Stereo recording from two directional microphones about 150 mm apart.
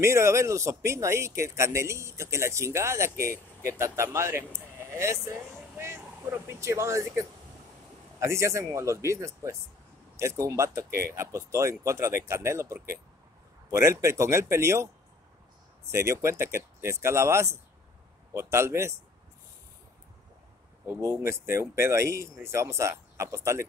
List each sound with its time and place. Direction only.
0.0 s speech: 20° right (ahead or behind)
15.9 s a man's voice: 20° right (ahead or behind)
20.8 s speech: 20° right (ahead or behind)